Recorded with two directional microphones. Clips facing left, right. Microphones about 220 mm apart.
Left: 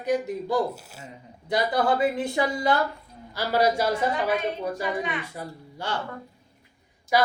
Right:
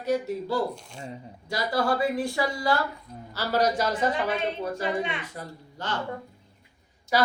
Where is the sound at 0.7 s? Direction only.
5° left (ahead or behind).